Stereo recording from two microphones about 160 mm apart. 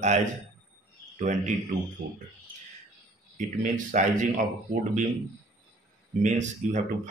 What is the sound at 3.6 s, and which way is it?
Speech, 50° right (ahead or behind).